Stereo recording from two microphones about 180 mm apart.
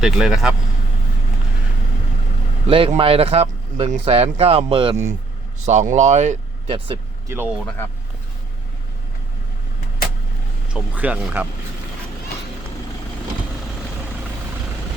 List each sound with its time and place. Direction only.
0.0 s speech: centre (ahead or behind)
2.6 s speech: 30° right (ahead or behind)
6.7 s speech: 30° right (ahead or behind)
7.3 s speech: 15° right (ahead or behind)
10.8 s speech: 10° right (ahead or behind)